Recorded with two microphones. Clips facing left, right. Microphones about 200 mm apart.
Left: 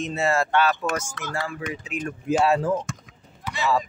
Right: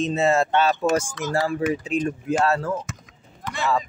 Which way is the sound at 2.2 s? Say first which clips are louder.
Left 4 dB; 10° left (ahead or behind).